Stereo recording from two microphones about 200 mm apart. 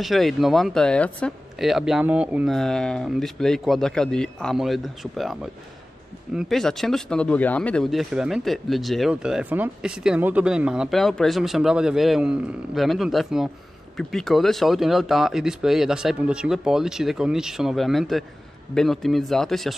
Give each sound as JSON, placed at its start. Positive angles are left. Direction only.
{"t": 0.0, "sound": "speech", "side_deg": 0}